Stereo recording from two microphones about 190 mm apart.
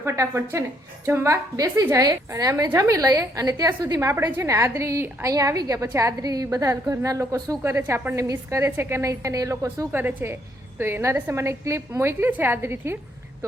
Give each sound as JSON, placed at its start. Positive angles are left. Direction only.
{"t": 0.0, "sound": "a woman's voice", "side_deg": -15}